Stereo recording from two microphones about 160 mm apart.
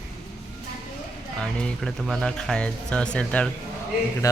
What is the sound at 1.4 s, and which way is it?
Speech, 5° left (ahead or behind).